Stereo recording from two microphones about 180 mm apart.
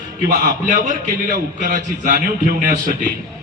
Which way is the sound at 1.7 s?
50° right (ahead or behind).